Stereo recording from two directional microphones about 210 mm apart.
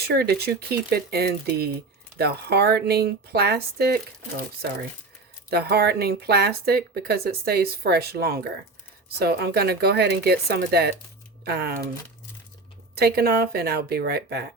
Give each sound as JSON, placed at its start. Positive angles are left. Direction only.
{"t": 0.1, "sound": "speech", "side_deg": -50}
{"t": 5.5, "sound": "speech", "side_deg": -50}
{"t": 13.0, "sound": "speech", "side_deg": -50}